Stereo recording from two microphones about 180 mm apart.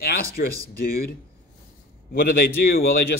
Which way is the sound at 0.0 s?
55° left (ahead or behind).